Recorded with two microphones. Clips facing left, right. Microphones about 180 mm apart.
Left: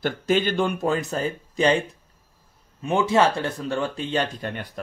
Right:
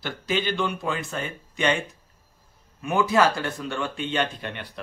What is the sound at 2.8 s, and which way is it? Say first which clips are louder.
Speech: left 1 dB; 25° left (ahead or behind).